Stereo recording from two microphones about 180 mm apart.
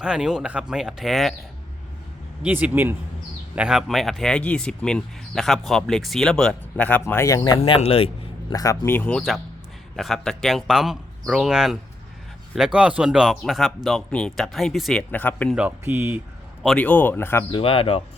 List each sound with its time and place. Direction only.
0.0 s speech: 5° right (ahead or behind)
2.4 s speech: 10° right (ahead or behind); by 7.6 s 20° left (ahead or behind)
7.6 s speech: 35° left (ahead or behind)
8.5 s speech: 20° left (ahead or behind)
15.5 s speech: 10° right (ahead or behind)
16.6 s speech: 10° left (ahead or behind)
17.5 s speech: 30° left (ahead or behind)